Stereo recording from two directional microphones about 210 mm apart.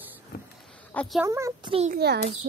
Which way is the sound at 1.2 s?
15° right (ahead or behind).